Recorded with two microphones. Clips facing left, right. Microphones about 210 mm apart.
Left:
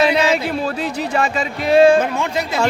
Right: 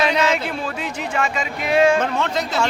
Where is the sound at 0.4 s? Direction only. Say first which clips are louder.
Left 5 dB; 35° left (ahead or behind).